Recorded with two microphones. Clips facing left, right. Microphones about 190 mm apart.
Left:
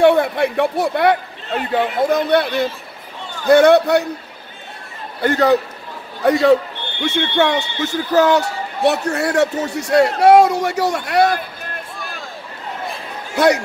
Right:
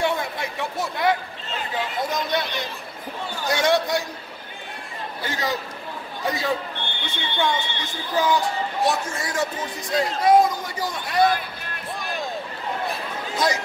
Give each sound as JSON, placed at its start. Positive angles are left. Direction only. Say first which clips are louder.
{"t": 0.0, "sound": "speech", "louder": "left 12 dB", "side_deg": 60}
{"t": 2.4, "sound": "a man's voice", "louder": "left 11 dB", "side_deg": 5}
{"t": 3.4, "sound": "speech", "louder": "left 11 dB", "side_deg": 60}
{"t": 5.2, "sound": "speech", "louder": "left 14 dB", "side_deg": 60}
{"t": 7.0, "sound": "a man's voice", "louder": "left 10 dB", "side_deg": 75}
{"t": 13.4, "sound": "a man's voice", "louder": "left 10 dB", "side_deg": 70}